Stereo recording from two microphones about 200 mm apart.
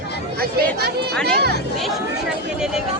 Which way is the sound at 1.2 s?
55° right (ahead or behind).